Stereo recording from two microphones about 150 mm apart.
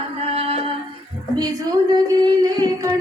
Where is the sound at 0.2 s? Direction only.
40° right (ahead or behind).